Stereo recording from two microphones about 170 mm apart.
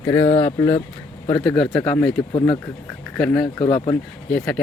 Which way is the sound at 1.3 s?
5° left (ahead or behind).